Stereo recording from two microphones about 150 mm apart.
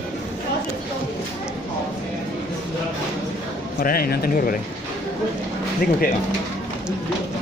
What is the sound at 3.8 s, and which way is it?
Speech, 80° left.